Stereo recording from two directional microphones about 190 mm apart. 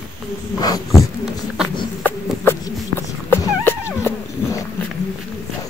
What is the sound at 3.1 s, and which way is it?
Dog, 10° left (ahead or behind).